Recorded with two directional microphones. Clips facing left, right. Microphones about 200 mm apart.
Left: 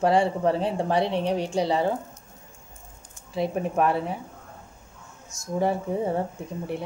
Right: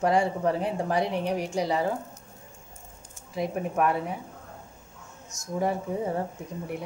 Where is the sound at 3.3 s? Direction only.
30° left (ahead or behind).